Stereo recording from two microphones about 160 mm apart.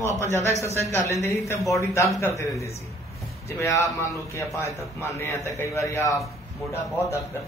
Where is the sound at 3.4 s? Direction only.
20° left (ahead or behind).